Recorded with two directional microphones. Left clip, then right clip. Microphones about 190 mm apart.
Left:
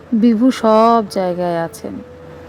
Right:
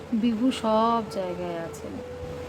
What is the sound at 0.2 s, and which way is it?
Speech, 40° left (ahead or behind).